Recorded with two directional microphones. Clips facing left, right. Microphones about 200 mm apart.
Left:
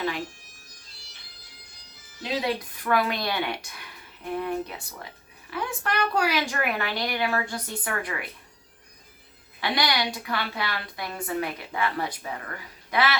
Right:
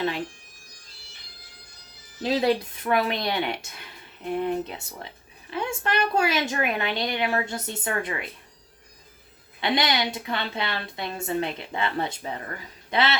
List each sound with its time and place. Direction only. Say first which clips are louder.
2.2 s a woman's voice: right 5 dB; 30° right (ahead or behind)
9.6 s a woman's voice: right 2 dB; 20° right (ahead or behind)